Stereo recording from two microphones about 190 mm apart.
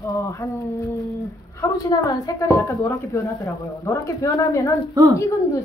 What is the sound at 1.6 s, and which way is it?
A woman's voice, 20° left (ahead or behind).